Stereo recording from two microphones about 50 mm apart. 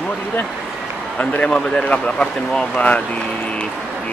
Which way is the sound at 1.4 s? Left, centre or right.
Centre.